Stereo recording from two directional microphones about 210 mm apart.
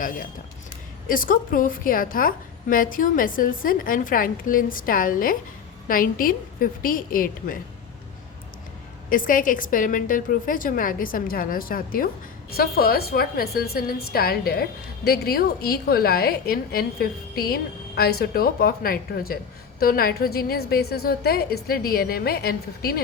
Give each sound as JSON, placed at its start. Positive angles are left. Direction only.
{"t": 0.0, "sound": "a woman's voice", "side_deg": 40}
{"t": 9.0, "sound": "a woman's voice", "side_deg": 40}